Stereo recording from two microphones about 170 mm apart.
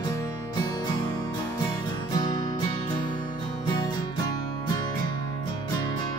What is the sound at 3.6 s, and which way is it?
Music, 25° left (ahead or behind).